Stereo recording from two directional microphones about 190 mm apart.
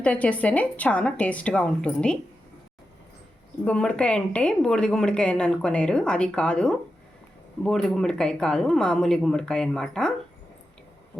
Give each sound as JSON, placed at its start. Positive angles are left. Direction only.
{"t": 0.0, "sound": "a woman's voice", "side_deg": 5}
{"t": 3.6, "sound": "a woman's voice", "side_deg": 5}